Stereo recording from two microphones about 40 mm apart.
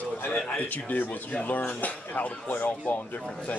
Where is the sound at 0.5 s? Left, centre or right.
Left.